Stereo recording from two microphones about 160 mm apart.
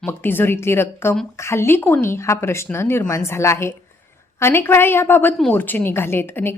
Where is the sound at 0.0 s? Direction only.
15° left (ahead or behind).